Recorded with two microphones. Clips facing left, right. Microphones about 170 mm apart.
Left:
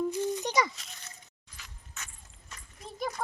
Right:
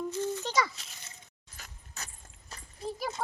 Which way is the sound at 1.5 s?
40° right (ahead or behind).